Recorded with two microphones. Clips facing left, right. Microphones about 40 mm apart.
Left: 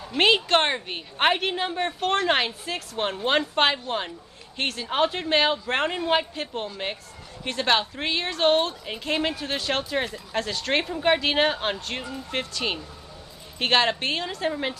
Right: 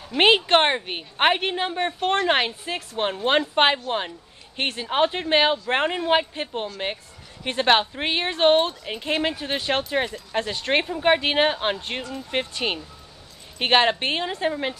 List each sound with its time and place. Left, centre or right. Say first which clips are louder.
0.2 s a woman's voice: right 3 dB; right
12.3 s a woman's voice: right 3 dB; right
14.5 s a woman's voice: right 1 dB; centre